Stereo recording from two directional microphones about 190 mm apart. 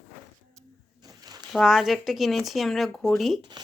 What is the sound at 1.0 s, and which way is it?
Crumpling, 20° right (ahead or behind).